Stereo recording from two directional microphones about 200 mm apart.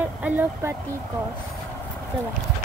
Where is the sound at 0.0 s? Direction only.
10° right (ahead or behind).